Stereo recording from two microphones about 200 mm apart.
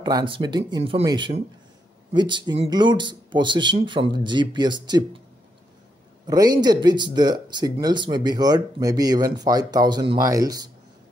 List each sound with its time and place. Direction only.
0.0 s speech: 20° right (ahead or behind)
6.2 s speech: 20° right (ahead or behind)